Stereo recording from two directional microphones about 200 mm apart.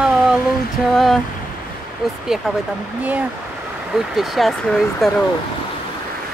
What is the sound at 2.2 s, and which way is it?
Speech, centre (ahead or behind).